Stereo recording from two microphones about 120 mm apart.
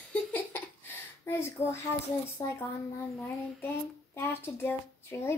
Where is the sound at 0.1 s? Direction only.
15° left (ahead or behind).